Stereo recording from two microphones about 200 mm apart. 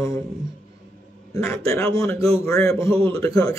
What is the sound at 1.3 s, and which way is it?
A man's voice, 15° left (ahead or behind).